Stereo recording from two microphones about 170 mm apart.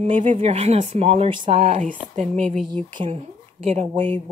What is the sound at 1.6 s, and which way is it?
Speech, 45° right (ahead or behind).